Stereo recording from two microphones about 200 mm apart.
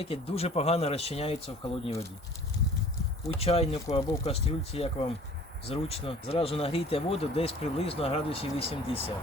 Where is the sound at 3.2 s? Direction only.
30° left (ahead or behind).